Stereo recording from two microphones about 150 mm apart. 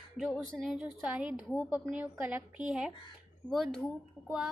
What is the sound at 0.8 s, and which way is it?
A woman's voice, 5° right (ahead or behind).